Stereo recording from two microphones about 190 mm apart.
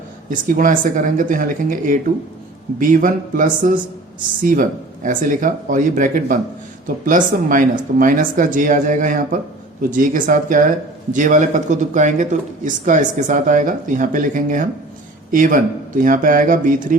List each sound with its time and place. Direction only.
0.3 s speech: 45° right (ahead or behind)
5.0 s speech: 45° right (ahead or behind)